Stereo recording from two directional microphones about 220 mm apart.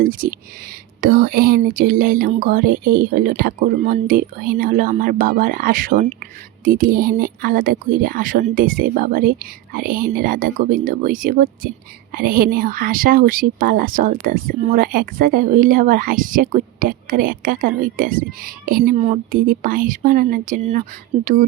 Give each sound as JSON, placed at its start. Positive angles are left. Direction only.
{"t": 0.0, "sound": "speech", "side_deg": -40}